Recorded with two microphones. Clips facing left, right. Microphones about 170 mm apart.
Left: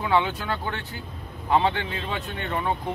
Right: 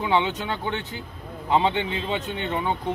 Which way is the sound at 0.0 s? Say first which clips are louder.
Even; 20° right (ahead or behind).